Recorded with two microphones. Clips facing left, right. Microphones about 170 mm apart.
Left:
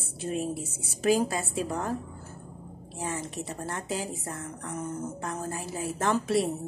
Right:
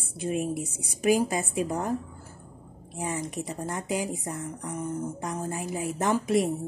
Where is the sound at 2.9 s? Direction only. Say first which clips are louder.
Right 2 dB; 15° right (ahead or behind).